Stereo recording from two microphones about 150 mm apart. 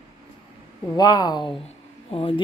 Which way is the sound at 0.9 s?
25° left (ahead or behind).